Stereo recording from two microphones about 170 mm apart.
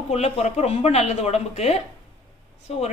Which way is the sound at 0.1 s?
40° left (ahead or behind).